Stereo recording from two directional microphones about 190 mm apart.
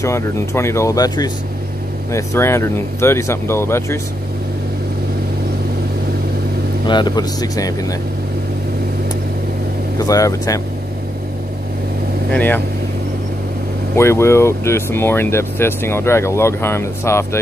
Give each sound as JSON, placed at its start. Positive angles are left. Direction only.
{"t": 0.0, "sound": "speech", "side_deg": 15}
{"t": 6.9, "sound": "speech", "side_deg": 25}
{"t": 9.9, "sound": "speech", "side_deg": 20}
{"t": 12.3, "sound": "speech", "side_deg": 10}
{"t": 13.9, "sound": "speech", "side_deg": 15}